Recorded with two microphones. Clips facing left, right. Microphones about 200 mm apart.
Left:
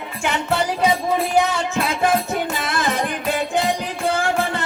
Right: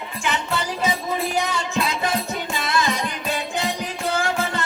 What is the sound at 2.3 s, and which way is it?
Music, 50° left (ahead or behind).